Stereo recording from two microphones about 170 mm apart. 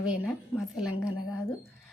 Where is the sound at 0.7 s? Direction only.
5° right (ahead or behind).